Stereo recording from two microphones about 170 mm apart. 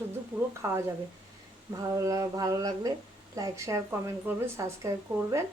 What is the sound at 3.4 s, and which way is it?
Speech, 15° right (ahead or behind).